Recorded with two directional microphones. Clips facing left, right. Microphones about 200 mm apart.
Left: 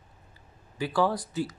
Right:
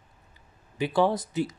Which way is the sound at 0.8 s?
20° right (ahead or behind).